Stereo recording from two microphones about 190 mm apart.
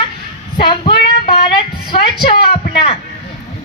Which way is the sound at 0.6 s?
25° left (ahead or behind).